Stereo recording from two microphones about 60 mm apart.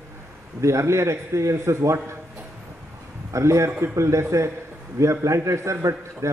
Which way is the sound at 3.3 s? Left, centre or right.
Right.